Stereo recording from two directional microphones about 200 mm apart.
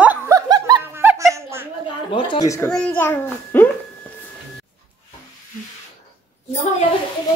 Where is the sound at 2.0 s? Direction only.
25° left (ahead or behind).